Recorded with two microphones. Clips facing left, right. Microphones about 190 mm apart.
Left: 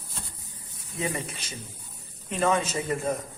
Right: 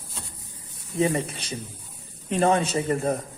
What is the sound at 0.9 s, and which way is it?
Speech, 35° right (ahead or behind).